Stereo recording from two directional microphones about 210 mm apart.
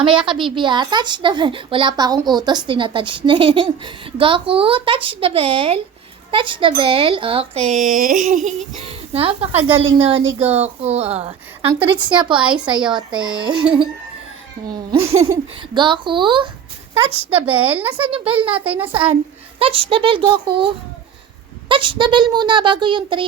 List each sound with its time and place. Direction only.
0.0 s a woman's voice: 25° right (ahead or behind)
14.7 s a woman's voice: 30° right (ahead or behind)
17.6 s speech: 10° right (ahead or behind)
18.4 s a woman's voice: 25° right (ahead or behind)
21.7 s a woman's voice: 25° right (ahead or behind)